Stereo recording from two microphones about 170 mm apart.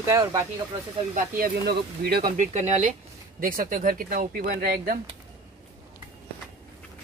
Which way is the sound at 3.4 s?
55° right (ahead or behind).